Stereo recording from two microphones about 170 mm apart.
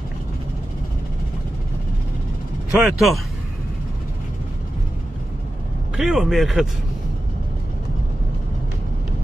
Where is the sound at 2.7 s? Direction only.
Centre (ahead or behind).